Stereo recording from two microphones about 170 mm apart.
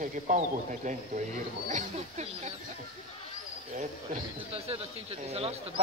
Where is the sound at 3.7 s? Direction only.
45° right (ahead or behind).